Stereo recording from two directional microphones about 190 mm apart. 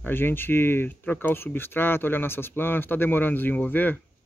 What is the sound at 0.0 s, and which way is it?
Speech, 10° left (ahead or behind).